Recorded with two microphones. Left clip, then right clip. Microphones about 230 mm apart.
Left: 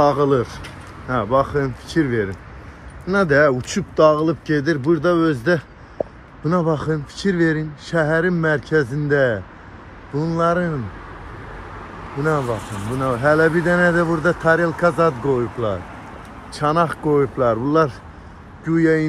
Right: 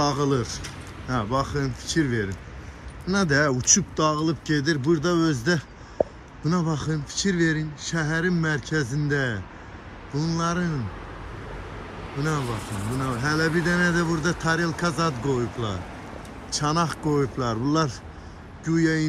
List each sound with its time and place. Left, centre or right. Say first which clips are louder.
0.0 s speech: left 8 dB; centre
12.2 s speech: left 8 dB; centre
12.4 s speech: left 6 dB; left
12.9 s speech: left 10 dB; centre